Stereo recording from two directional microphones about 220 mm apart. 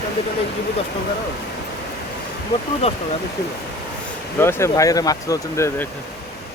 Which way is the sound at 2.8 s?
25° left (ahead or behind).